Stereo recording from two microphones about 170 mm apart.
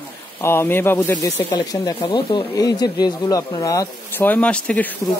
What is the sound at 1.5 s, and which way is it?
Speech, 25° left (ahead or behind).